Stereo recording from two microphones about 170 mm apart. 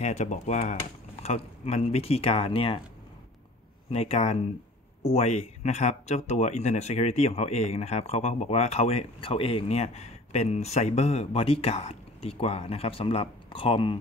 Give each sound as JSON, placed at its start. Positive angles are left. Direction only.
{"t": 0.0, "sound": "speech", "side_deg": 45}
{"t": 3.9, "sound": "speech", "side_deg": 35}